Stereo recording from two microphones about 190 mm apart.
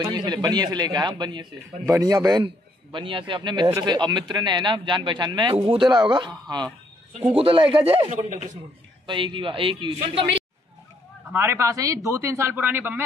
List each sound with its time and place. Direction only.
0.0 s speech: 20° right (ahead or behind)
7.3 s speech: 30° right (ahead or behind)
9.0 s speech: 25° right (ahead or behind)
11.3 s speech: 15° right (ahead or behind)